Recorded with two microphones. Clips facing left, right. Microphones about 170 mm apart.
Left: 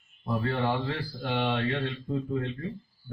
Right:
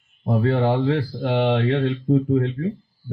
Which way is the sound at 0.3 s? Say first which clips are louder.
Right 8 dB; 60° right (ahead or behind).